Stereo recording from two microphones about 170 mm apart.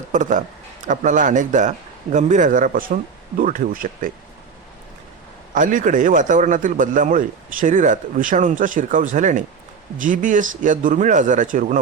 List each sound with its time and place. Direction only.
0.1 s a man's voice: 45° right (ahead or behind)
5.5 s a man's voice: 50° right (ahead or behind)